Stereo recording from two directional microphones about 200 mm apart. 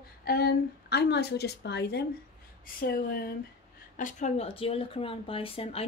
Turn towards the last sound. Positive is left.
turn(degrees=30)  # may be behind; listen again after turning